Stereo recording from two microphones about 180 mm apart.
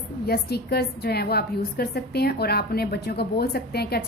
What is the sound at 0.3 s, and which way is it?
A woman's voice, 60° left (ahead or behind).